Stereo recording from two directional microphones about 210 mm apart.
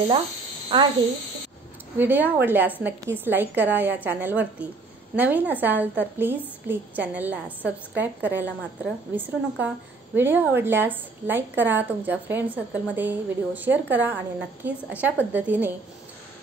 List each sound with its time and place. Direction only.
0.7 s a child's voice: 25° right (ahead or behind)
2.0 s a woman's voice: 10° right (ahead or behind)